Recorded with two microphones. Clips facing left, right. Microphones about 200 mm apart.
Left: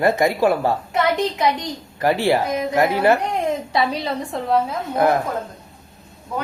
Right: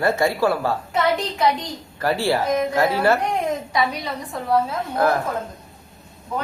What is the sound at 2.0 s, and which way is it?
Speech, 15° left (ahead or behind).